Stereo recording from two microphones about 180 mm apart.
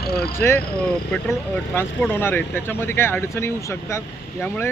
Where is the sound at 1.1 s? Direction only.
Centre (ahead or behind).